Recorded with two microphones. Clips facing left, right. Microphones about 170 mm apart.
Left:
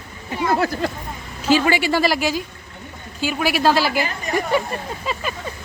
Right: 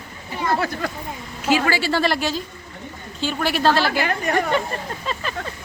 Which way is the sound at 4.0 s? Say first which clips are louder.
Right 3 dB; 60° right (ahead or behind).